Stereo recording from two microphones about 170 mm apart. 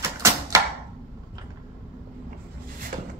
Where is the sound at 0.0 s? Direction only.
15° right (ahead or behind).